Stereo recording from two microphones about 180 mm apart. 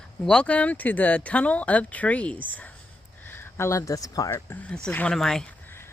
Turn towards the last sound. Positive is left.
turn(degrees=10)  # may be behind; listen again after turning